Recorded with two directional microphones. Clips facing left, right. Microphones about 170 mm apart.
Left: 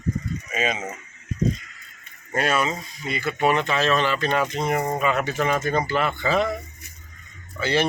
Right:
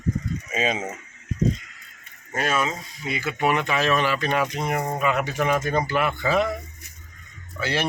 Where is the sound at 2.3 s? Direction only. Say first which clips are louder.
Left 2 dB; centre (ahead or behind).